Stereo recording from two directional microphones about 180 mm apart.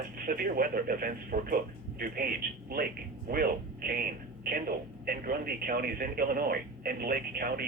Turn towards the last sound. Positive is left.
turn(degrees=-55)  # may be behind; listen again after turning